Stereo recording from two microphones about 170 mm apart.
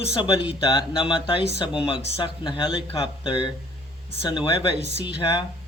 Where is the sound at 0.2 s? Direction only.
30° left (ahead or behind).